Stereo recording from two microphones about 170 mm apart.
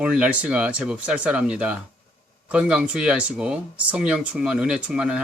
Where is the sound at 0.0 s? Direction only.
5° right (ahead or behind).